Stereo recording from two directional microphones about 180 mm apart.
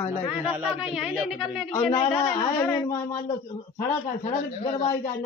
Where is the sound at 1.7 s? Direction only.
15° left (ahead or behind).